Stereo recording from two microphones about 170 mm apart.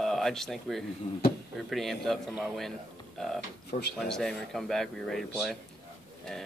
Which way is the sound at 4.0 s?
Centre (ahead or behind).